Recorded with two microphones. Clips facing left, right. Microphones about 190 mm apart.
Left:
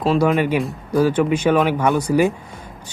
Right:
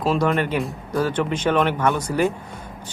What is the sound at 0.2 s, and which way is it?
Speech, 5° left (ahead or behind).